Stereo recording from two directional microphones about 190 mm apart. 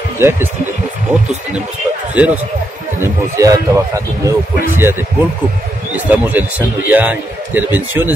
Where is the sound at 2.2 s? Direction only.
5° right (ahead or behind).